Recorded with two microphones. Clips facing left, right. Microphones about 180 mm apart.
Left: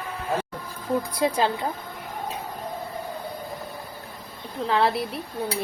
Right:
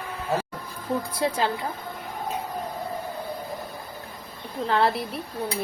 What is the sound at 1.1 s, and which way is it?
Speech, 20° left (ahead or behind).